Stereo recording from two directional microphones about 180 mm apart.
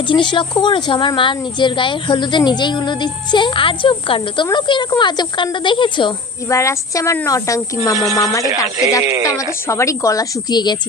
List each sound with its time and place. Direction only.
0.1 s speech: 25° left (ahead or behind)
9.6 s a woman's voice: 15° left (ahead or behind)